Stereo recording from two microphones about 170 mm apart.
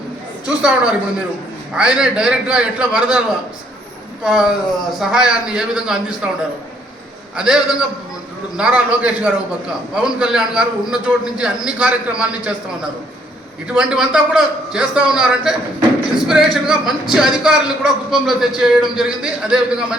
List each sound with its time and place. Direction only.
0.4 s a man's voice: 5° right (ahead or behind)
4.2 s a man's voice: centre (ahead or behind)
7.3 s a man's voice: 5° right (ahead or behind)
13.7 s a man's voice: 5° right (ahead or behind)